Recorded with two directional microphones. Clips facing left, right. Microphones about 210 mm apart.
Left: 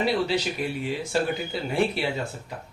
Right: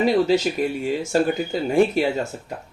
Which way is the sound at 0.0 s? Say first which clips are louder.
Right 6 dB; 45° right (ahead or behind).